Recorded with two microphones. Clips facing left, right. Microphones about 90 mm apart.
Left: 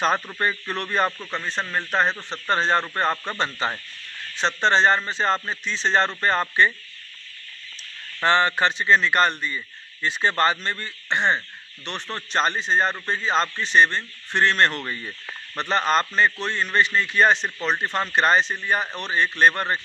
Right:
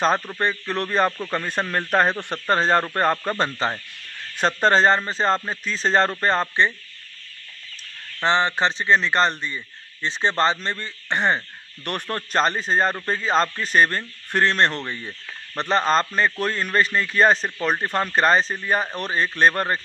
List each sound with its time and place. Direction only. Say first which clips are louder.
0.4 s speech: right 2 dB; 35° right (ahead or behind)
1.3 s speech: right 3 dB; 50° right (ahead or behind)
2.4 s speech: right 2 dB; 40° right (ahead or behind)
8.2 s a man's voice: even; 20° right (ahead or behind); by 19.8 s 40° right (ahead or behind)